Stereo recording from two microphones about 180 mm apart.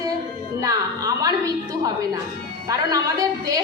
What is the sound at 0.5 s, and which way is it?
A woman's voice, 20° right (ahead or behind).